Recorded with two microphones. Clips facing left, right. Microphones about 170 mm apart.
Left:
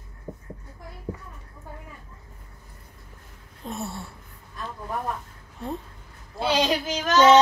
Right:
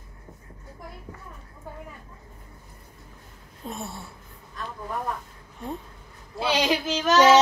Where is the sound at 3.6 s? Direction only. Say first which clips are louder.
Left 2 dB; centre (ahead or behind).